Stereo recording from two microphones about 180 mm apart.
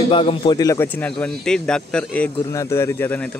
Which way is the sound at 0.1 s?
30° left (ahead or behind).